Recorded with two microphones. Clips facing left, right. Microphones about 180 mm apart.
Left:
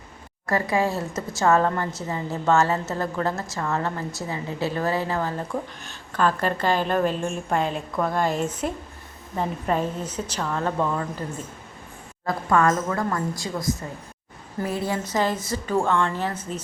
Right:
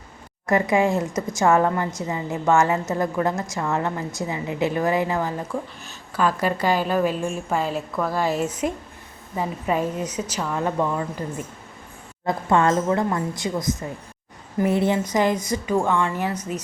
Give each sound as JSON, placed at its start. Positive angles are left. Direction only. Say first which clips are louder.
{"t": 0.4, "sound": "a woman's voice", "louder": "right 4 dB", "side_deg": -20}
{"t": 12.2, "sound": "a woman's voice", "louder": "right 1 dB", "side_deg": -25}